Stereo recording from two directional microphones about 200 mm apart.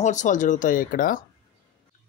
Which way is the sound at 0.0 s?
40° left (ahead or behind).